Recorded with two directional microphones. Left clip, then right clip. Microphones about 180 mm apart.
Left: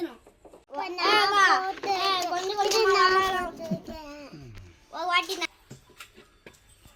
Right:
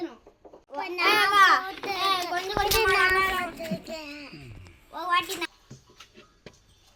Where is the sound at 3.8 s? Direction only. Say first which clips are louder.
Right 3 dB; 65° left (ahead or behind).